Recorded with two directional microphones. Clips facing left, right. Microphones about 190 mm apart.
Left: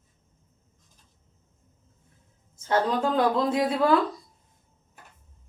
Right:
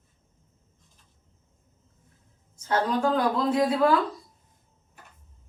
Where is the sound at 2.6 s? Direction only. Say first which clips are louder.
Even; 25° left (ahead or behind).